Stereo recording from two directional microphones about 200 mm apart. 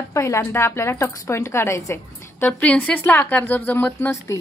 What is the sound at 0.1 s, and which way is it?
A woman's voice, 15° left (ahead or behind).